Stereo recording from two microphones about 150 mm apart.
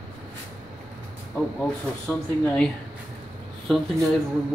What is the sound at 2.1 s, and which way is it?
Speech, 10° left (ahead or behind).